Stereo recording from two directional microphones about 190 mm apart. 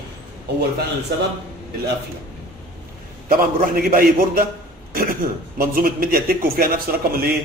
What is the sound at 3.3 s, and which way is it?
A man's voice, 50° right (ahead or behind).